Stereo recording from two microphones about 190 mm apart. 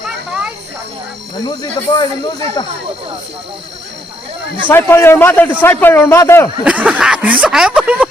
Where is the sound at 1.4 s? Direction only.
20° left (ahead or behind).